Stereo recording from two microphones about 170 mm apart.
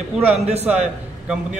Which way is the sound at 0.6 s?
5° right (ahead or behind).